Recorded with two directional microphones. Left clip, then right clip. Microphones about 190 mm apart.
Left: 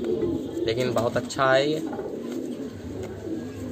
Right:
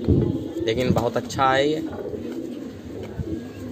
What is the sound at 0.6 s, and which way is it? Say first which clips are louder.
Speech: right 2 dB; 30° right (ahead or behind).